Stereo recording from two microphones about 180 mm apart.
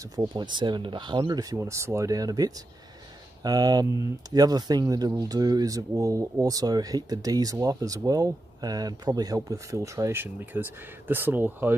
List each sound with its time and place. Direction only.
0.1 s speech: 25° right (ahead or behind)